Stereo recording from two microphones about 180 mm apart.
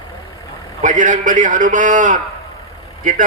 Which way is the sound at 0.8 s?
45° right (ahead or behind).